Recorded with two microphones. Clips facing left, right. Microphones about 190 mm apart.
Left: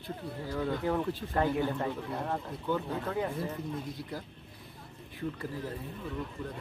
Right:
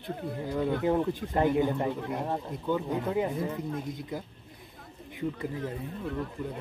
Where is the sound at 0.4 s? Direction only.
20° right (ahead or behind).